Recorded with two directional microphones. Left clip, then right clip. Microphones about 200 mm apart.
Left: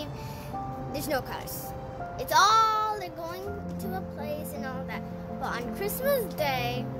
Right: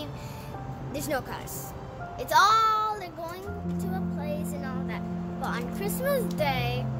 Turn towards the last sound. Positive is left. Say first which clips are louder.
# even
turn(degrees=15)  # may be behind; listen again after turning